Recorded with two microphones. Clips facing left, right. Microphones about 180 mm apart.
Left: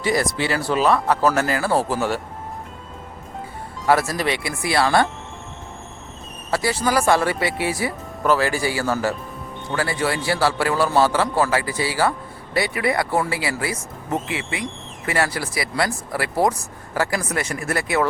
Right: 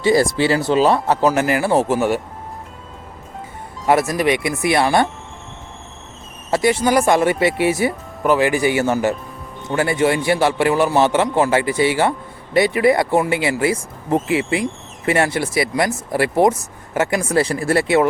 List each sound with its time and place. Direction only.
0.0 s speech: 30° right (ahead or behind)
1.3 s speech: 15° right (ahead or behind)
3.8 s speech: 20° right (ahead or behind)
6.5 s speech: 20° right (ahead or behind)